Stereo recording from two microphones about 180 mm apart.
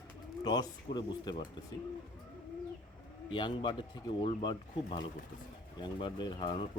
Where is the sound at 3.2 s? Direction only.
25° left (ahead or behind).